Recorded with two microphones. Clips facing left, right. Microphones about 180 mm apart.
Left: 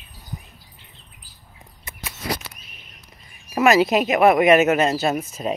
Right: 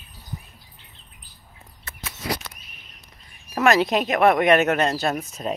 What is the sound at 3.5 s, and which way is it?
Speech, 5° left (ahead or behind).